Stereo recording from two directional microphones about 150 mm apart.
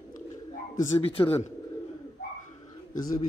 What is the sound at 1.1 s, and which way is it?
Speech, 40° left (ahead or behind).